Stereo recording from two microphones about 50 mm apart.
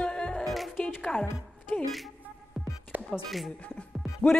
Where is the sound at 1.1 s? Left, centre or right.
Centre.